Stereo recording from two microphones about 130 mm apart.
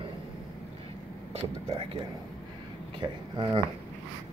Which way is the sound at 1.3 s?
50° right (ahead or behind).